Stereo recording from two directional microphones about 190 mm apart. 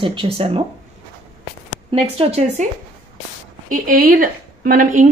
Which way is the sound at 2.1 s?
35° right (ahead or behind).